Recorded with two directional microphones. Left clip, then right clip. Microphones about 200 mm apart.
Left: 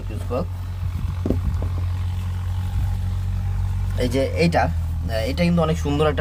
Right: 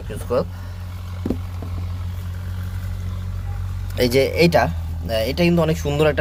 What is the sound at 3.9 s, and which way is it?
Speech, 40° right (ahead or behind).